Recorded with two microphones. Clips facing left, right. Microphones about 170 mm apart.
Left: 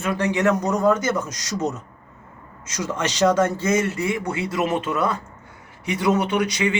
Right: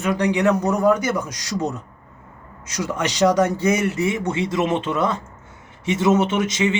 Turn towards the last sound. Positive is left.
turn(degrees=-20)  # may be behind; listen again after turning